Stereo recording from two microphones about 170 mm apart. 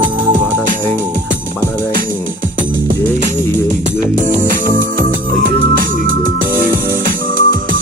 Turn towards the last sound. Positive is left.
turn(degrees=-55)  # may be behind; listen again after turning